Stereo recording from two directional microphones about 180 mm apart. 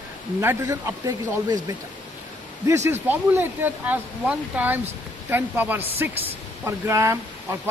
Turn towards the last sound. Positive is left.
turn(degrees=-15)  # may be behind; listen again after turning